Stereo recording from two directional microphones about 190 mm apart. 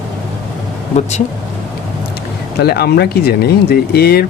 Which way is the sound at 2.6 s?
55° left (ahead or behind).